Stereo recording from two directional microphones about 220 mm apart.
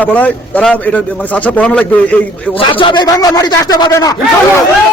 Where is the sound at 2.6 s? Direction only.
20° left (ahead or behind).